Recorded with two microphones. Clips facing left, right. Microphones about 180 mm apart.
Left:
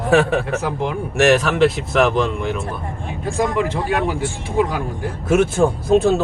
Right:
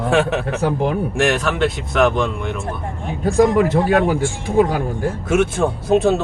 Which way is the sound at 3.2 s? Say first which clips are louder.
Right 6 dB; 40° right (ahead or behind).